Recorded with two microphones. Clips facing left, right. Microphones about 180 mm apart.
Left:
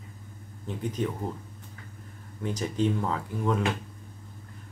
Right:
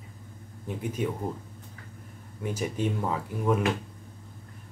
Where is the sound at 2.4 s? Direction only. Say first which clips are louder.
Left 2 dB; 10° right (ahead or behind).